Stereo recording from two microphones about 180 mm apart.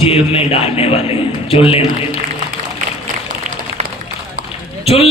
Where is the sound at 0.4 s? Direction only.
35° left (ahead or behind).